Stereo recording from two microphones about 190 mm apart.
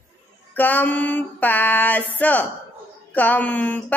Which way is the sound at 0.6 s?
10° left (ahead or behind).